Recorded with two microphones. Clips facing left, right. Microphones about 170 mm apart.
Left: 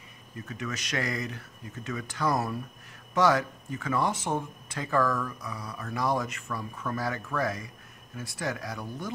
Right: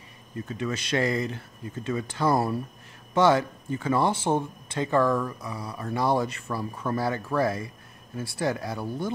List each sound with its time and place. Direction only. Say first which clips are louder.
0.5 s speech: right 6 dB; 30° right (ahead or behind)